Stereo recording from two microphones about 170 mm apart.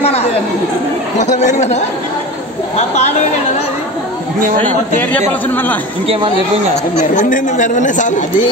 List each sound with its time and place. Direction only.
0.0 s chatter: 40° left (ahead or behind)
1.1 s speech: 45° left (ahead or behind)
2.9 s speech: 40° left (ahead or behind)
5.5 s speech: 10° left (ahead or behind)
6.0 s speech: 30° right (ahead or behind)
6.7 s speech: 40° left (ahead or behind)